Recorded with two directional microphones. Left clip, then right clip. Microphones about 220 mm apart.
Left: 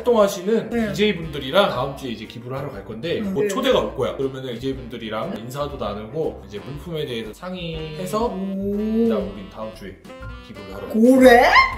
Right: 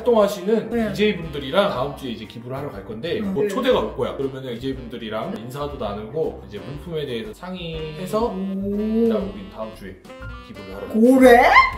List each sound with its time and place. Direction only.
0.0 s speech: 20° left (ahead or behind)
0.7 s speech: centre (ahead or behind)
1.3 s speech: 20° left (ahead or behind)
8.3 s speech: centre (ahead or behind)
10.8 s speech: centre (ahead or behind)